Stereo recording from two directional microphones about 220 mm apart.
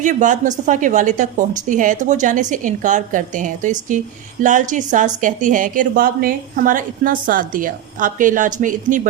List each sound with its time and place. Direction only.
0.0 s a woman's voice: 35° right (ahead or behind)